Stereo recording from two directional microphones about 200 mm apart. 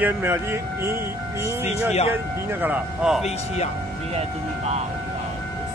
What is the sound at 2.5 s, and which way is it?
Speech, 10° right (ahead or behind).